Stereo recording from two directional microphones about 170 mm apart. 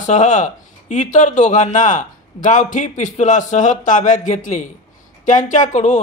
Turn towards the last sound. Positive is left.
turn(degrees=45)  # may be behind; listen again after turning